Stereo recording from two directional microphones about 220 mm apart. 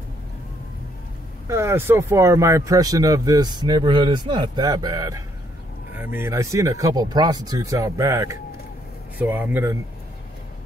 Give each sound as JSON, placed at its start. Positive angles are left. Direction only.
{"t": 1.5, "sound": "speech", "side_deg": -10}